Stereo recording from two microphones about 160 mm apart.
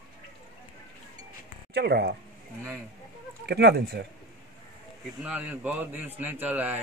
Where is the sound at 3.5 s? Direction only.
90° right.